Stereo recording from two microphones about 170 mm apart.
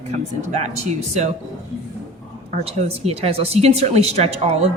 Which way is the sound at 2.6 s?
35° right (ahead or behind).